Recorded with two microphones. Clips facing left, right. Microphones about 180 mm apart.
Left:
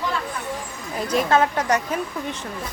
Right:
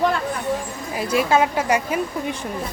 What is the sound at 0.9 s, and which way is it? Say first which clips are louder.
Speech: right 1 dB; 5° right (ahead or behind).